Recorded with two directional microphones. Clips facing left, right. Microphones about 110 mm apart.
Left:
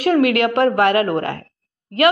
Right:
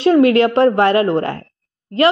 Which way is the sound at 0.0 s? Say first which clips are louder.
Right 4 dB; 30° right (ahead or behind).